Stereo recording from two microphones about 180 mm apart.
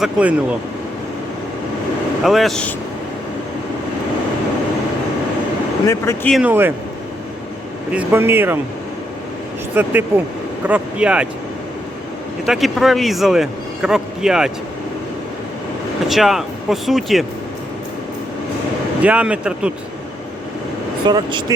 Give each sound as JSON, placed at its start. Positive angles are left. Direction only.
{"t": 0.0, "sound": "speech", "side_deg": -5}
{"t": 2.2, "sound": "a man's voice", "side_deg": 0}
{"t": 5.9, "sound": "speech", "side_deg": 15}
{"t": 6.3, "sound": "speech", "side_deg": -10}
{"t": 7.9, "sound": "speech", "side_deg": -10}
{"t": 9.7, "sound": "a man's voice", "side_deg": -10}
{"t": 12.5, "sound": "a man's voice", "side_deg": 0}
{"t": 16.0, "sound": "a man's voice", "side_deg": 0}
{"t": 19.0, "sound": "speech", "side_deg": -5}
{"t": 21.1, "sound": "speech", "side_deg": -25}